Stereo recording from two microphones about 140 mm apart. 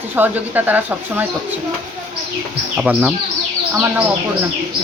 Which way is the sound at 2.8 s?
5° right (ahead or behind).